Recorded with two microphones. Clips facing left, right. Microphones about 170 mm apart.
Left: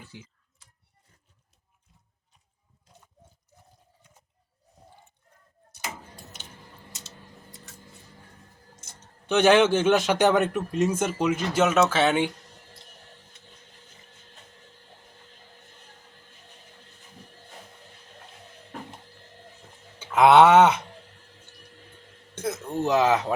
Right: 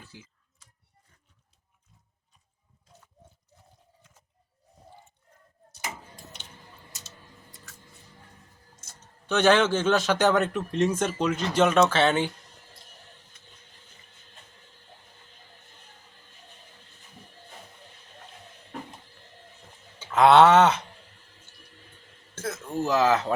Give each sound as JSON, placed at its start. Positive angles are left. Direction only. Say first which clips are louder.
{"t": 9.3, "sound": "a man's voice", "louder": "left 2 dB", "side_deg": 10}
{"t": 20.0, "sound": "speech", "louder": "left 1 dB", "side_deg": 10}
{"t": 22.4, "sound": "a sound", "louder": "left 2 dB", "side_deg": 20}